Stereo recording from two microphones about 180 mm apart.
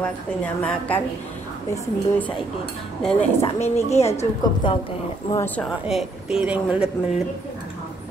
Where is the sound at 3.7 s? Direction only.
35° left (ahead or behind).